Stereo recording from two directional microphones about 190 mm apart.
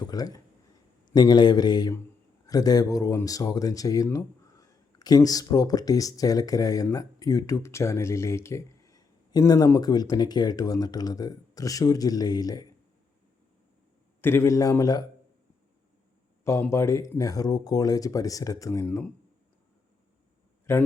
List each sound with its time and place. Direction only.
0.0 s speech: 20° left (ahead or behind)
14.2 s speech: 10° left (ahead or behind)
16.4 s speech: 15° left (ahead or behind)
20.7 s speech: 15° left (ahead or behind)